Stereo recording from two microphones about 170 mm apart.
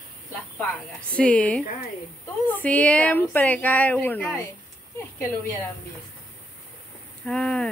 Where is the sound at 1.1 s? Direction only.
5° left (ahead or behind).